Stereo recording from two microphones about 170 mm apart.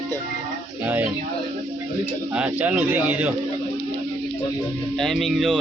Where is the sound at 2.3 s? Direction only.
10° right (ahead or behind).